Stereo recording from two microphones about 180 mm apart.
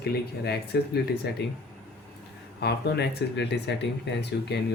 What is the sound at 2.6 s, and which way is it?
Speech, 65° left (ahead or behind).